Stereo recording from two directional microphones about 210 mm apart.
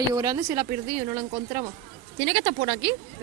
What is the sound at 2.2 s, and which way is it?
Speech, 60° right (ahead or behind).